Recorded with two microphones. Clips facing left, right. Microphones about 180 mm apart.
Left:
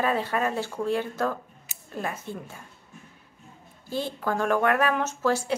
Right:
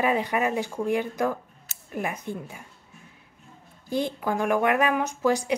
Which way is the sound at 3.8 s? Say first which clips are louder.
Right 2 dB; 15° right (ahead or behind).